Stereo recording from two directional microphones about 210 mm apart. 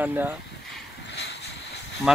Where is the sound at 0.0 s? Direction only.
10° right (ahead or behind).